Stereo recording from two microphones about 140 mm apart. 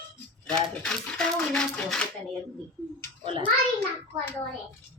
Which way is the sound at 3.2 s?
35° right (ahead or behind).